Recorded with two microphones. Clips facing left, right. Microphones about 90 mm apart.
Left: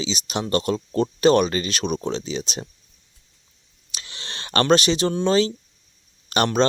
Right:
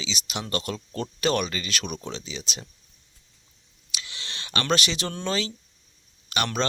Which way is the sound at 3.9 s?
35° left (ahead or behind).